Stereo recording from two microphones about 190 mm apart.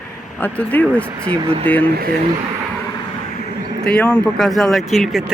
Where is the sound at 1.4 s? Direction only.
30° right (ahead or behind).